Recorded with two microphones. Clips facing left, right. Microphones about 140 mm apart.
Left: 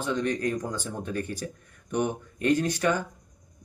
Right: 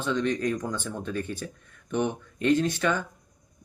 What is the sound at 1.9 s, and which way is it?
Speech, 10° left (ahead or behind).